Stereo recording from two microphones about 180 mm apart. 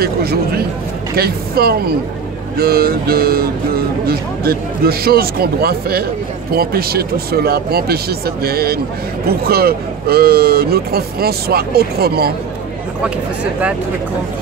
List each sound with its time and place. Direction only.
0.0 s speech: 60° right (ahead or behind)
13.4 s speech: 5° right (ahead or behind)